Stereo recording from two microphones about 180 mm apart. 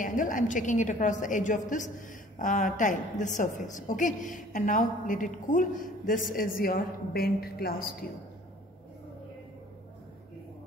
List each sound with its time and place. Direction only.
0.0 s a woman's voice: 45° left (ahead or behind)